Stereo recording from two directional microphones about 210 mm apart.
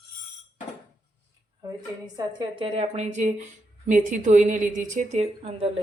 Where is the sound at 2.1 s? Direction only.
20° right (ahead or behind).